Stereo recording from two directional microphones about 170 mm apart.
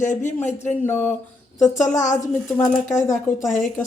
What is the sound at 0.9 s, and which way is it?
Speech, 10° left (ahead or behind).